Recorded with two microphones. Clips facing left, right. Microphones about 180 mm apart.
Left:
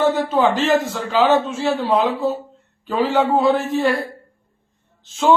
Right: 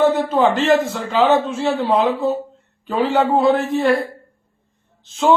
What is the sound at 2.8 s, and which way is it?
A man's voice, centre (ahead or behind).